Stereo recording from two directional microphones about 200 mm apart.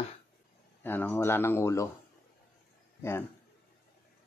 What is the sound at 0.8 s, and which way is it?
Speech, 10° left (ahead or behind).